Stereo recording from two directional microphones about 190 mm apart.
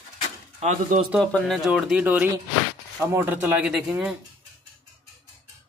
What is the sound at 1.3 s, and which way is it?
Speech, centre (ahead or behind).